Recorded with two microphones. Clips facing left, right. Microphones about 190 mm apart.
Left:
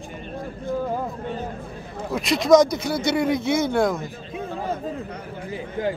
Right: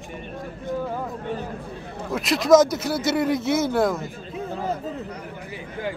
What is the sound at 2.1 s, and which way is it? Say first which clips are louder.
Speech: even; centre (ahead or behind).